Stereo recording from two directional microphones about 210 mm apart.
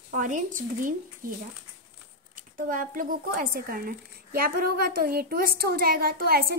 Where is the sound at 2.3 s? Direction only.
40° right (ahead or behind).